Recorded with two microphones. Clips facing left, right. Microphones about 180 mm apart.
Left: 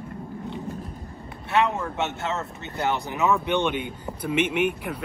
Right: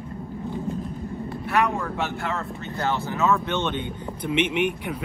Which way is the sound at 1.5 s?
25° left (ahead or behind).